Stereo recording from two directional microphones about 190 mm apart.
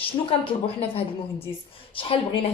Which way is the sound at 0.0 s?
30° left (ahead or behind).